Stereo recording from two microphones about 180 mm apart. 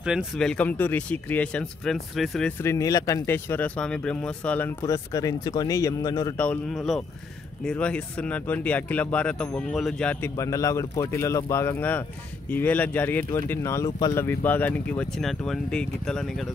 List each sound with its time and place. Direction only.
0.0 s speech: 5° right (ahead or behind)
2.6 s speech: 15° left (ahead or behind)
6.3 s speech: 5° left (ahead or behind)
10.3 s speech: 15° left (ahead or behind)
14.2 s speech: 10° left (ahead or behind)